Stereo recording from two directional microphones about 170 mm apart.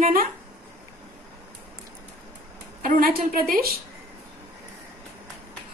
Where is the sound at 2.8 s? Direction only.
55° right (ahead or behind).